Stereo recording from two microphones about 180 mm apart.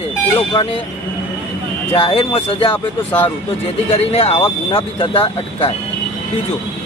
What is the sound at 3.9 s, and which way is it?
Speech, 35° left (ahead or behind).